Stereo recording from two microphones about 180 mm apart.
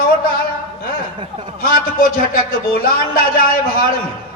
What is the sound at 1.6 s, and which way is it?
A man's voice, 50° left (ahead or behind).